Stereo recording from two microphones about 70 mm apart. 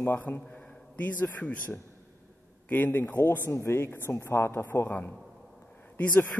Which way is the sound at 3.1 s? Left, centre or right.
Left.